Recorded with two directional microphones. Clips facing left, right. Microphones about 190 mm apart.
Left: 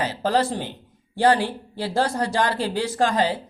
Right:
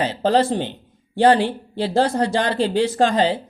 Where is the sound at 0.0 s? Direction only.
25° right (ahead or behind).